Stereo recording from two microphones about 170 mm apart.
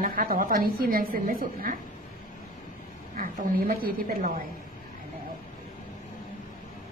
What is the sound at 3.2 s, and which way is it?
A woman's voice, 55° right (ahead or behind).